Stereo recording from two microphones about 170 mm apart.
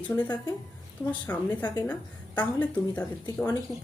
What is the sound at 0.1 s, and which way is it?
Speech, 15° left (ahead or behind).